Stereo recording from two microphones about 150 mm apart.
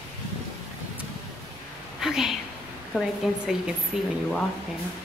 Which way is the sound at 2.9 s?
Centre (ahead or behind).